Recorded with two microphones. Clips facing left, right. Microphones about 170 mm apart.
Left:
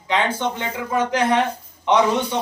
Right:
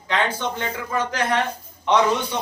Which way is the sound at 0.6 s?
20° left (ahead or behind).